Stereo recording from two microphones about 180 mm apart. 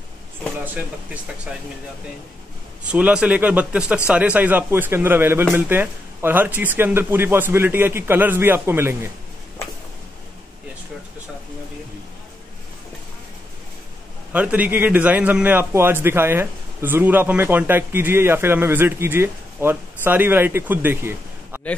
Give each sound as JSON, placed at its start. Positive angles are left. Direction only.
{"t": 2.9, "sound": "a man's voice", "side_deg": -5}
{"t": 14.3, "sound": "a man's voice", "side_deg": -10}